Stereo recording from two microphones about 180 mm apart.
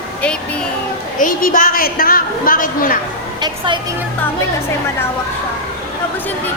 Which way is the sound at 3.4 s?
25° right (ahead or behind).